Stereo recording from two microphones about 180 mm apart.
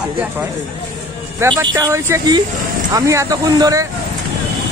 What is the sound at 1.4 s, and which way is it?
Speech, 25° right (ahead or behind).